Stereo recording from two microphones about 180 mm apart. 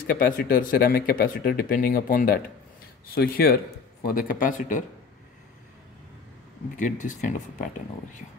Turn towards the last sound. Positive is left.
turn(degrees=45)  # may be behind; listen again after turning